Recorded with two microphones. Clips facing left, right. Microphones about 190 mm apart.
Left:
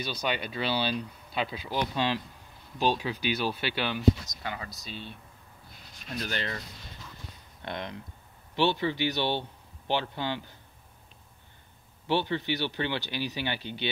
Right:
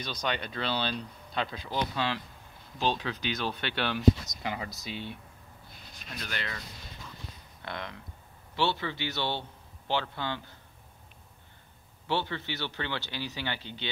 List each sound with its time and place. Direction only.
0.0 s speech: 10° left (ahead or behind)
4.4 s speech: 20° right (ahead or behind)
6.2 s speech: 35° left (ahead or behind)
7.6 s speech: 20° left (ahead or behind)
12.1 s speech: 15° left (ahead or behind)